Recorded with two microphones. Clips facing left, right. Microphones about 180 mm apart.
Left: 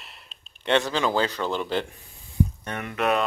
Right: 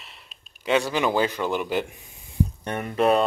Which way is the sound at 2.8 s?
30° right (ahead or behind).